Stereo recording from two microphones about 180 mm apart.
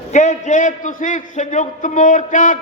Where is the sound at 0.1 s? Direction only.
40° left (ahead or behind).